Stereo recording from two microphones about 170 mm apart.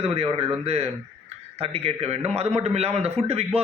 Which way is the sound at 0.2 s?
35° right (ahead or behind).